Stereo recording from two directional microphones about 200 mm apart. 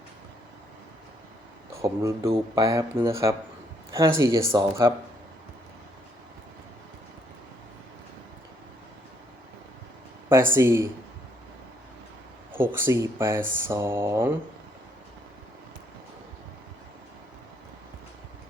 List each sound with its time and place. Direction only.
1.7 s speech: 15° right (ahead or behind)
10.5 s speech: 15° right (ahead or behind)
12.5 s speech: 10° right (ahead or behind)